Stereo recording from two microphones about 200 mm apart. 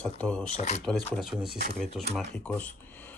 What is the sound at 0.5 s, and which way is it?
Speech, 35° left (ahead or behind).